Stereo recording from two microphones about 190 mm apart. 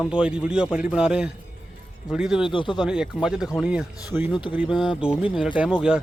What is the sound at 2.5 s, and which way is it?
Speech, 25° left (ahead or behind).